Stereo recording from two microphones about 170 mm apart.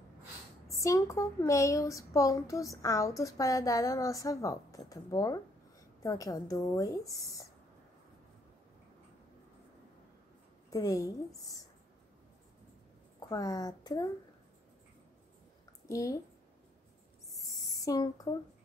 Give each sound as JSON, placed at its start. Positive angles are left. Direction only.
{"t": 0.7, "sound": "a woman's voice", "side_deg": 20}
{"t": 10.7, "sound": "a woman's voice", "side_deg": 20}
{"t": 13.3, "sound": "a woman's voice", "side_deg": 20}
{"t": 15.9, "sound": "a woman's voice", "side_deg": 20}
{"t": 17.3, "sound": "owl", "side_deg": 20}